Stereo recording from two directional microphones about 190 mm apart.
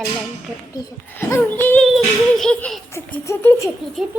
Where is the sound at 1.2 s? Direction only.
15° left (ahead or behind).